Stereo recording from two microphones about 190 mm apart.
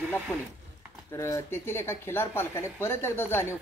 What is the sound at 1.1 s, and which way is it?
Speech, 15° left (ahead or behind).